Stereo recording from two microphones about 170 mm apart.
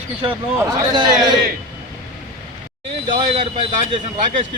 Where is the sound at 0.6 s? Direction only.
25° right (ahead or behind).